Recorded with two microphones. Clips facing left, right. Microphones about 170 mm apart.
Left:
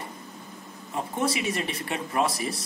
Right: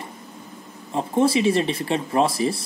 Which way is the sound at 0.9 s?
30° right (ahead or behind).